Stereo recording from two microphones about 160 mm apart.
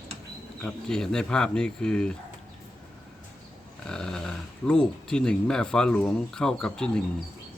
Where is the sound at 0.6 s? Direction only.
5° left (ahead or behind).